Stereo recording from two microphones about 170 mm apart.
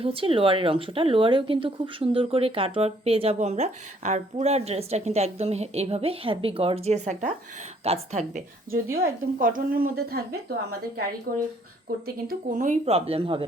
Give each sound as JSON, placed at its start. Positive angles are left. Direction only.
{"t": 0.0, "sound": "speech", "side_deg": -30}
{"t": 8.3, "sound": "a woman's voice", "side_deg": -55}
{"t": 11.3, "sound": "a woman's voice", "side_deg": -65}
{"t": 12.0, "sound": "speech", "side_deg": -55}